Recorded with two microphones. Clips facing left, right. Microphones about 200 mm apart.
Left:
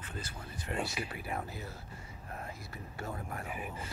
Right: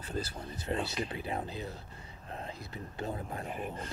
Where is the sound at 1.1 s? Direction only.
25° right (ahead or behind).